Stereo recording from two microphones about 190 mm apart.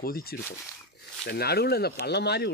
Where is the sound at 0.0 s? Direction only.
50° left (ahead or behind).